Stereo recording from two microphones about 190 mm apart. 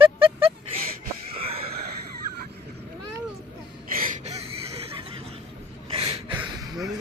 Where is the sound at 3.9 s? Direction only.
40° right (ahead or behind).